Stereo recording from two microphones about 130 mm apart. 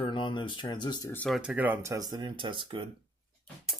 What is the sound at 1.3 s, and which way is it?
Speech, 5° right (ahead or behind).